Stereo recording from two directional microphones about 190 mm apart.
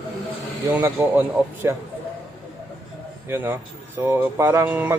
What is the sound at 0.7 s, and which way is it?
Speech, 15° right (ahead or behind).